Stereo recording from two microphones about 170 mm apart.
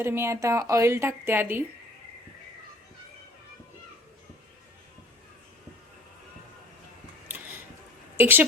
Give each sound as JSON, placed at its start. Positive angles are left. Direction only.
{"t": 0.0, "sound": "a woman's voice", "side_deg": -15}
{"t": 7.3, "sound": "a sound", "side_deg": -10}
{"t": 8.2, "sound": "a woman's voice", "side_deg": -10}